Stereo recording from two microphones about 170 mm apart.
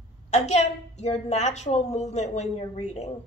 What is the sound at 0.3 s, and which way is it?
A woman's voice, 40° left (ahead or behind).